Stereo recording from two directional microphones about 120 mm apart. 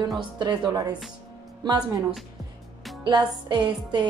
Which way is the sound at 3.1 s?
40° right (ahead or behind).